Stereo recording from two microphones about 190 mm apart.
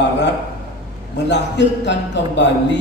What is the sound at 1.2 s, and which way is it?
A man's voice, 65° left (ahead or behind).